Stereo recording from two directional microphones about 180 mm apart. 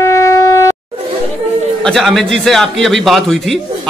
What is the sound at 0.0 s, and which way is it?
Shofar, 15° left (ahead or behind).